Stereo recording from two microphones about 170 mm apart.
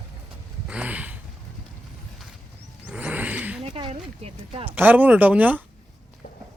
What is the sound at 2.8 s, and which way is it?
Vehicle, 5° right (ahead or behind).